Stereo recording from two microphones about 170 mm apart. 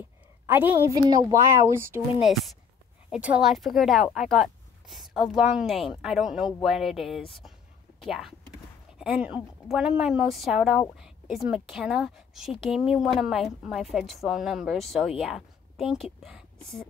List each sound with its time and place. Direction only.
0.5 s speech: 10° right (ahead or behind)
0.9 s speech: 20° right (ahead or behind)
3.1 s a woman's voice: 5° right (ahead or behind)